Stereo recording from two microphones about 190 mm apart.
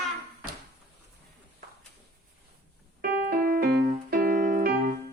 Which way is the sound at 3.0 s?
50° right (ahead or behind).